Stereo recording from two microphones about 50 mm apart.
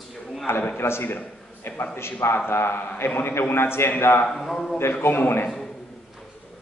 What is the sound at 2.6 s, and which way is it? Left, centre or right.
Speech, left.